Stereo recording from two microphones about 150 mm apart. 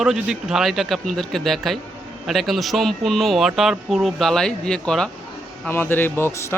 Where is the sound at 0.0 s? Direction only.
5° right (ahead or behind).